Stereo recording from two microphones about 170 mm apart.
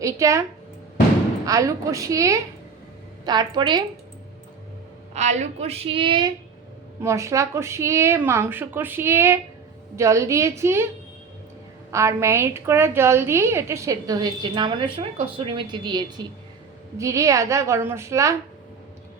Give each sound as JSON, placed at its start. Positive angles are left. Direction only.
{"t": 0.0, "sound": "a woman's voice", "side_deg": -20}
{"t": 1.5, "sound": "a woman's voice", "side_deg": -20}
{"t": 5.1, "sound": "a woman's voice", "side_deg": -40}
{"t": 11.9, "sound": "a woman's voice", "side_deg": -15}